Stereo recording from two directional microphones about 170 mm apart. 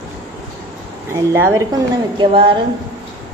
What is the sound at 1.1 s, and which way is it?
Speech, 15° right (ahead or behind).